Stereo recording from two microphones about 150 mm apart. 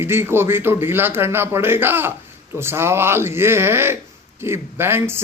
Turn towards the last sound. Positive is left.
turn(degrees=-15)  # may be behind; listen again after turning